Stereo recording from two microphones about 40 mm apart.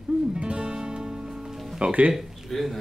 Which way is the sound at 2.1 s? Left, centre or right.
Centre.